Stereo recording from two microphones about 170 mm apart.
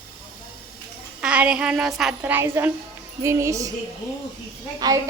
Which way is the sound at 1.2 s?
5° right (ahead or behind).